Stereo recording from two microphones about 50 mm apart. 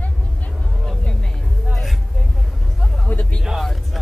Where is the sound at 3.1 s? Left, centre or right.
Left.